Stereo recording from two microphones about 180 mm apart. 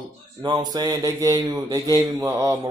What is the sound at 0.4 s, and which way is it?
Speech, 20° right (ahead or behind).